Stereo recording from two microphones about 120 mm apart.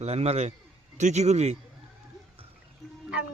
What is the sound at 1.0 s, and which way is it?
Speech, 75° right (ahead or behind).